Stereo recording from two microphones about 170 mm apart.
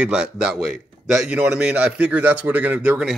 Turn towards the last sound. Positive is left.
turn(degrees=-5)  # may be behind; listen again after turning